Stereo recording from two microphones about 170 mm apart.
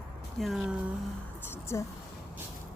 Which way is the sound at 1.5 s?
15° left (ahead or behind).